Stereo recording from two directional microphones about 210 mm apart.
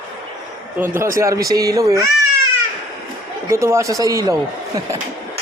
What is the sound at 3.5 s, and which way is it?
Speech, 15° right (ahead or behind).